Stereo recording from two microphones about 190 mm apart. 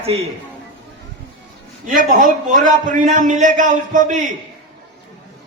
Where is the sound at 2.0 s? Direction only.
45° right (ahead or behind).